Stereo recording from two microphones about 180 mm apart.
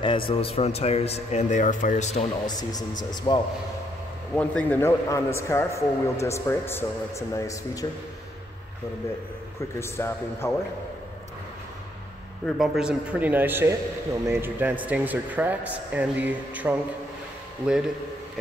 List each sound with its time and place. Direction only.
0.0 s speech: 30° left (ahead or behind)
2.4 s speech: 20° left (ahead or behind)
4.4 s speech: 10° left (ahead or behind)
9.8 s speech: 15° left (ahead or behind)
12.4 s a man's voice: centre (ahead or behind)